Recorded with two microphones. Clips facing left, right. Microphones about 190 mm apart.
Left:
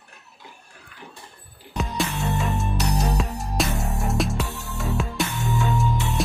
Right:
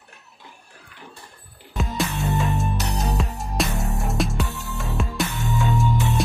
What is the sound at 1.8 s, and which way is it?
Music, centre (ahead or behind).